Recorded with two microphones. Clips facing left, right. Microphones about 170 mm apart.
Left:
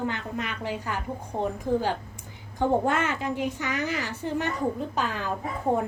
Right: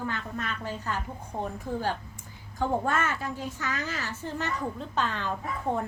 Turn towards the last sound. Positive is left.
turn(degrees=10)  # may be behind; listen again after turning